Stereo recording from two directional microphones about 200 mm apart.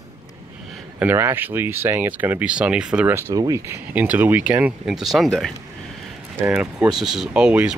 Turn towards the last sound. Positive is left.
turn(degrees=-5)  # may be behind; listen again after turning